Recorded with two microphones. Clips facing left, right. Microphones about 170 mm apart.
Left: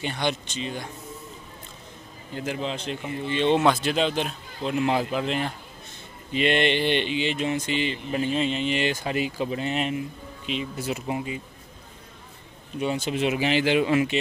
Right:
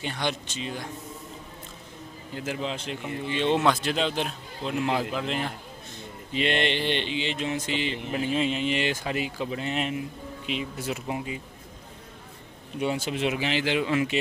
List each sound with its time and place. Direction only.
0.0 s speech: centre (ahead or behind)
2.3 s speech: 5° right (ahead or behind)
10.4 s speech: 10° right (ahead or behind)
10.8 s speech: centre (ahead or behind)
12.7 s speech: 10° right (ahead or behind)
13.5 s speech: 15° left (ahead or behind)
14.1 s speech: 5° right (ahead or behind)